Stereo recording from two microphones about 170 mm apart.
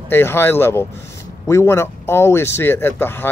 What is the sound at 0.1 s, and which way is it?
Speech, 15° left (ahead or behind).